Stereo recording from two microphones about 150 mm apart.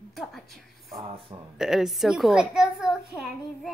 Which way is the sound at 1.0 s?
40° right (ahead or behind).